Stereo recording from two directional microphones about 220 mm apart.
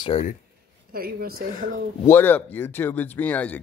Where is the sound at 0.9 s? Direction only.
45° right (ahead or behind).